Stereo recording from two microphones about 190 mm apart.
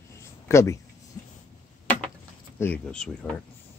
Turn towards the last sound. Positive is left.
turn(degrees=5)  # may be behind; listen again after turning